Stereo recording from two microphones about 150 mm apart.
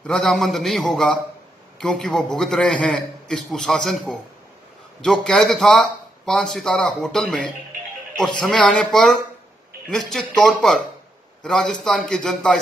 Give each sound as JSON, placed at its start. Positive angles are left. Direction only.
{"t": 0.0, "sound": "a man's voice", "side_deg": 5}